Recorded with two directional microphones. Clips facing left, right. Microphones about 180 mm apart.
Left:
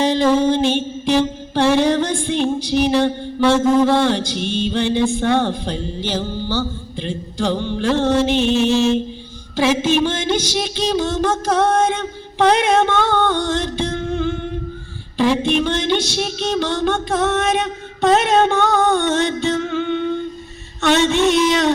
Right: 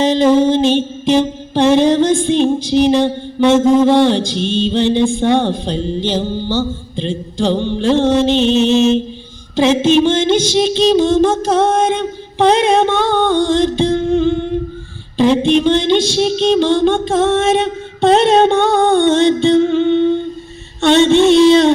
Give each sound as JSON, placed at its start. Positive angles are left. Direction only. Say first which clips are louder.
{"t": 0.0, "sound": "music", "louder": "right 4 dB", "side_deg": -20}